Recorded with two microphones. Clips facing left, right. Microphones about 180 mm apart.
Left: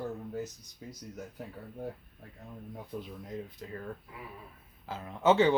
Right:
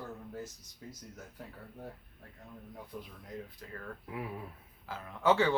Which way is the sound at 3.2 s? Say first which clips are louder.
Left 4 dB; 20° left (ahead or behind).